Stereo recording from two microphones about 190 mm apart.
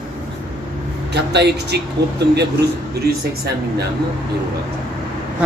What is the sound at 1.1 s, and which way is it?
A man's voice, 60° right (ahead or behind).